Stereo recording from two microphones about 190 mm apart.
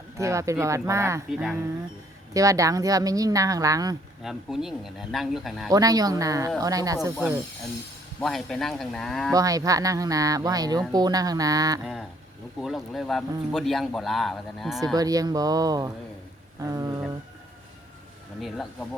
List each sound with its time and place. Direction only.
0.2 s speech: 15° right (ahead or behind)
1.3 s speech: centre (ahead or behind)
2.3 s speech: 15° right (ahead or behind)
4.2 s speech: centre (ahead or behind)
5.7 s speech: 20° right (ahead or behind)
8.2 s speech: centre (ahead or behind)
9.3 s speech: 20° right (ahead or behind)
12.5 s speech: centre (ahead or behind)
14.9 s speech: 20° right (ahead or behind)
16.6 s a sound: 20° right (ahead or behind)
18.3 s speech: centre (ahead or behind)